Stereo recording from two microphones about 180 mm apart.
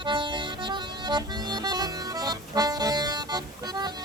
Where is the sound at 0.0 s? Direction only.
25° right (ahead or behind).